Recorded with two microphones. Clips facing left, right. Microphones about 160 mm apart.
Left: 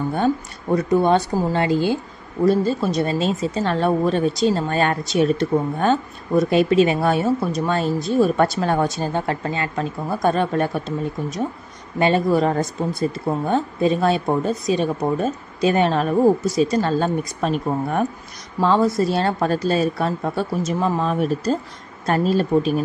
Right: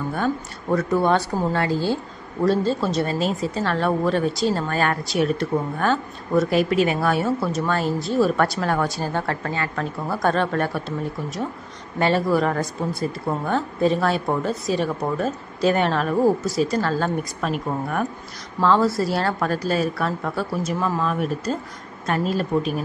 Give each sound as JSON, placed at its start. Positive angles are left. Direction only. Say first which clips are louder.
{"t": 0.7, "sound": "speech", "louder": "left 3 dB", "side_deg": 20}
{"t": 12.0, "sound": "speech", "louder": "left 2 dB", "side_deg": 20}
{"t": 18.6, "sound": "speech", "louder": "left 1 dB", "side_deg": 15}